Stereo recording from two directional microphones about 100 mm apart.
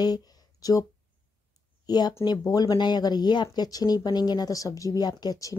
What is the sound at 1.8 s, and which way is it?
Speech, 45° left (ahead or behind).